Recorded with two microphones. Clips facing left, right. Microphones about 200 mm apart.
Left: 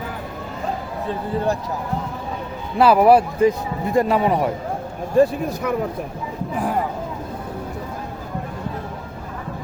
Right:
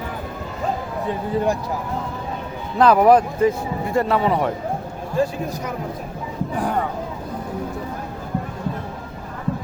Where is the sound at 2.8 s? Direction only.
10° left (ahead or behind).